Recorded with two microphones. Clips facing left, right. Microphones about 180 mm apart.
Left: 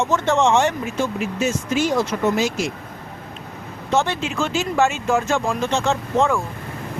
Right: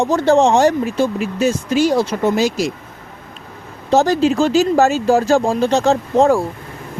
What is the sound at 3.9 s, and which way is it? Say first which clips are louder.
Speech: right 8 dB; 35° right (ahead or behind).